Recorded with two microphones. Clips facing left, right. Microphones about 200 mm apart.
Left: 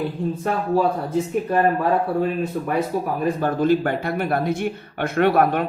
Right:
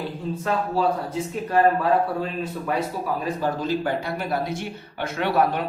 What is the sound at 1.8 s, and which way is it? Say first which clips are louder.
Speech: left 2 dB; 55° left (ahead or behind).